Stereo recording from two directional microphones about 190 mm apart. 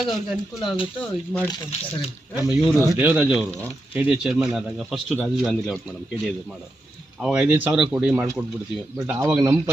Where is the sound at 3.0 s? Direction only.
10° right (ahead or behind).